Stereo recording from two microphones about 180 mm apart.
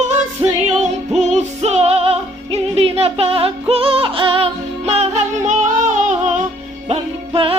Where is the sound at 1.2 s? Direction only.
40° right (ahead or behind).